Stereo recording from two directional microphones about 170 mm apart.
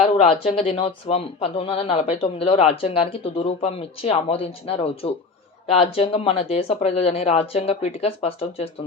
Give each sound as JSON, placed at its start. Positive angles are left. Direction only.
{"t": 0.0, "sound": "speech", "side_deg": 35}